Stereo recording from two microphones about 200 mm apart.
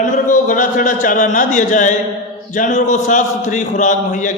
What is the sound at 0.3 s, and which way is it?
Speech, 40° left (ahead or behind).